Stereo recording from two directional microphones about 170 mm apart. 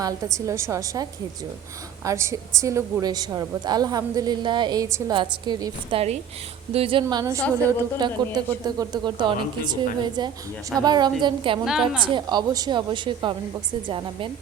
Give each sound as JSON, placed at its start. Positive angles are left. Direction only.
{"t": 0.3, "sound": "a woman's voice", "side_deg": -15}
{"t": 2.0, "sound": "a woman's voice", "side_deg": -15}
{"t": 11.6, "sound": "a woman's voice", "side_deg": -5}
{"t": 12.0, "sound": "a woman's voice", "side_deg": -25}